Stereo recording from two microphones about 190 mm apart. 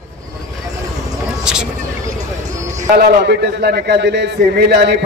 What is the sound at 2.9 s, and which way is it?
A man's voice, 60° right (ahead or behind).